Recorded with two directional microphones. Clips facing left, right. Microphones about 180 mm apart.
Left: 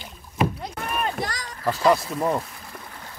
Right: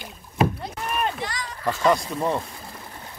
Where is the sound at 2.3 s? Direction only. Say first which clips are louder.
Left 1 dB; 30° right (ahead or behind).